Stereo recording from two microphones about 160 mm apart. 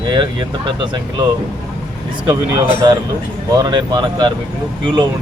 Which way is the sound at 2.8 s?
25° right (ahead or behind).